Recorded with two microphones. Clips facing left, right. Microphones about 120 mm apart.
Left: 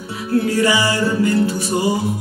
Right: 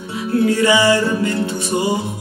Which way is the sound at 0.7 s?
25° right (ahead or behind).